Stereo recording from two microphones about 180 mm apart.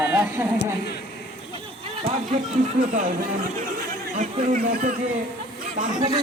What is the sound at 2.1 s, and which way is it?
Speech, 40° right (ahead or behind).